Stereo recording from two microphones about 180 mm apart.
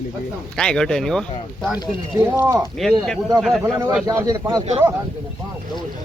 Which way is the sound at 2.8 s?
Centre (ahead or behind).